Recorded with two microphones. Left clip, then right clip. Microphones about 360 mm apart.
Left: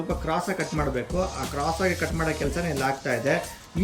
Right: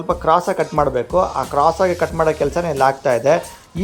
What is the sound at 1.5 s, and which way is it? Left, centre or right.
Speech, right.